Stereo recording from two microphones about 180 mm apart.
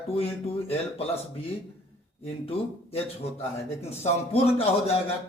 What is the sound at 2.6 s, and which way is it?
A man's voice, 30° left (ahead or behind).